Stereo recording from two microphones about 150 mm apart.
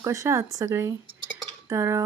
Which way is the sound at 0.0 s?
20° right (ahead or behind).